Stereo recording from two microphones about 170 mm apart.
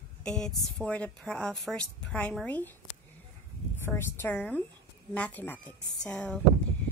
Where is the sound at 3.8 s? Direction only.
10° left (ahead or behind).